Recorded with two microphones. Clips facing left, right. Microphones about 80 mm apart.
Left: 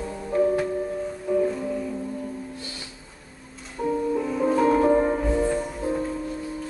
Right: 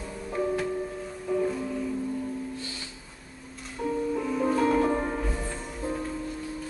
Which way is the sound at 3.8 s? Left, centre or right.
Centre.